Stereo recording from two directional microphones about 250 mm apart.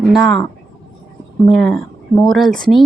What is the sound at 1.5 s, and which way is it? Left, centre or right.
Speech, centre.